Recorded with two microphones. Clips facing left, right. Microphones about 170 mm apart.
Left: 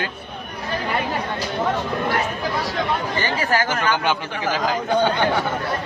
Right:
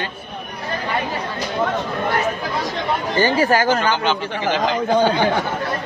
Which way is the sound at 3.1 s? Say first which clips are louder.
Right 9 dB; 35° right (ahead or behind).